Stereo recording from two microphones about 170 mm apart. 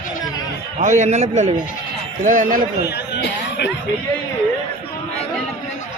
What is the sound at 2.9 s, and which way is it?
Music, 90° left.